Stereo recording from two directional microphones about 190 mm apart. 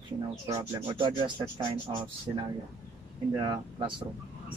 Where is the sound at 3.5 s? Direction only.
25° right (ahead or behind).